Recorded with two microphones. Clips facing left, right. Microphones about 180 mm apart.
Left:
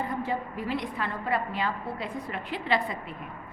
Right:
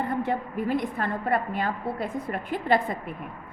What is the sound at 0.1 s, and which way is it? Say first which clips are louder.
A woman's voice: right 3 dB; 55° right (ahead or behind).